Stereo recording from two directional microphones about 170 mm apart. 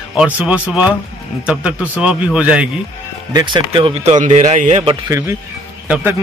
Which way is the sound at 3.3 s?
25° right (ahead or behind).